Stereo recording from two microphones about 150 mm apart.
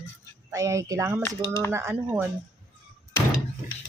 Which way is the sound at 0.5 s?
20° right (ahead or behind).